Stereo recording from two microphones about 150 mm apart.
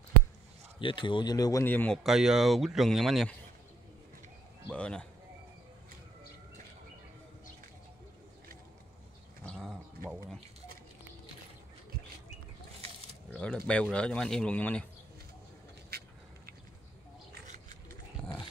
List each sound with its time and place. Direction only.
0.7 s speech: 35° left (ahead or behind)
1.7 s speech: 10° left (ahead or behind)
2.0 s speech: 5° right (ahead or behind)
4.6 s speech: 5° left (ahead or behind)
9.5 s bird: 5° left (ahead or behind)
13.3 s a sound: 5° left (ahead or behind)
13.7 s speech: 5° left (ahead or behind)
15.9 s duck: 90° right
18.2 s dog: 5° left (ahead or behind)